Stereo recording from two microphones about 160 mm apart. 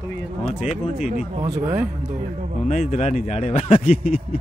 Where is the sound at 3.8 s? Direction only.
60° left (ahead or behind).